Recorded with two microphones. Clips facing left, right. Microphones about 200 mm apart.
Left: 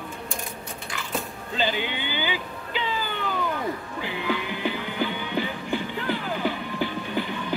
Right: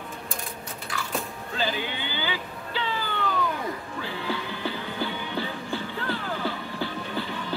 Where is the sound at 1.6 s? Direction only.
20° left (ahead or behind).